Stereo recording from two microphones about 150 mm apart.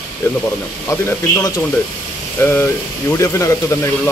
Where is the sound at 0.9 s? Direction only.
25° left (ahead or behind).